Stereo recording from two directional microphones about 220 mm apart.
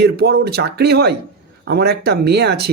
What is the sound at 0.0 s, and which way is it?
Speech, 45° right (ahead or behind).